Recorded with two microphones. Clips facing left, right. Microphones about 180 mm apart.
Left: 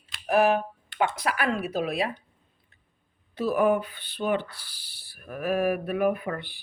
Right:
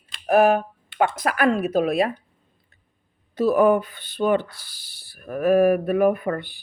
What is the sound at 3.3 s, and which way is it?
Speech, 45° right (ahead or behind).